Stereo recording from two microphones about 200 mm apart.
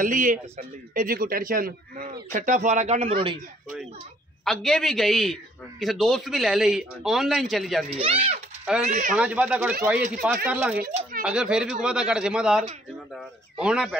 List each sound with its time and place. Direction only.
0.0 s speech: 40° right (ahead or behind)
4.5 s a man's voice: 5° left (ahead or behind)
8.0 s speech: 30° right (ahead or behind)
9.1 s a man's voice: 5° right (ahead or behind)